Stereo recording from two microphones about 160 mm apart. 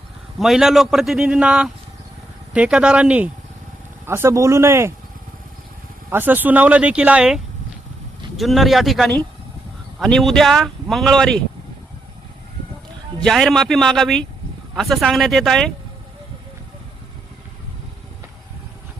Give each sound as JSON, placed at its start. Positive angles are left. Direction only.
{"t": 0.3, "sound": "a man's voice", "side_deg": 0}
{"t": 6.1, "sound": "a man's voice", "side_deg": -10}
{"t": 13.2, "sound": "a man's voice", "side_deg": 0}